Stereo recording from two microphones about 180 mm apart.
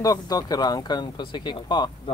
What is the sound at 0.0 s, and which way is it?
Speech, 20° left (ahead or behind).